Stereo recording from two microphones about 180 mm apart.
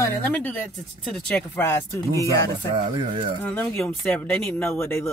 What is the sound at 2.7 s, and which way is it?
Speech, 30° right (ahead or behind).